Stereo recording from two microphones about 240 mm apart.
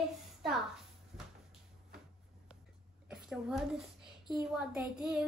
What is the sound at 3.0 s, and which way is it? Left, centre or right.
A woman's voice, centre.